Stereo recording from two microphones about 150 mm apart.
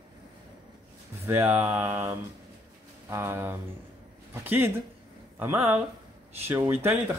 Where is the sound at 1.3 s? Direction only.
15° right (ahead or behind).